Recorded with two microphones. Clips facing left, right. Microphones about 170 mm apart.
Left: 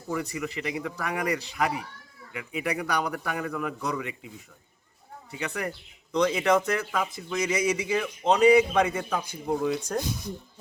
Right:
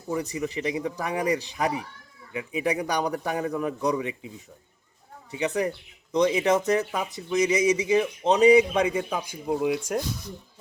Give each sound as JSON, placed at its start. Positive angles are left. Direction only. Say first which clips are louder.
{"t": 0.1, "sound": "speech", "louder": "right 2 dB", "side_deg": -25}
{"t": 3.1, "sound": "speech", "louder": "right 4 dB", "side_deg": -30}
{"t": 5.3, "sound": "a man's voice", "louder": "right 6 dB", "side_deg": -20}
{"t": 10.0, "sound": "speech", "louder": "left 1 dB", "side_deg": 20}